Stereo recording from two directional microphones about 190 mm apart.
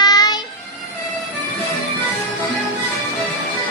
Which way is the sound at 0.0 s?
20° left (ahead or behind).